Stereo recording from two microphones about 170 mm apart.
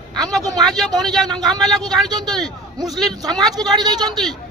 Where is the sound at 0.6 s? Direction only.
Centre (ahead or behind).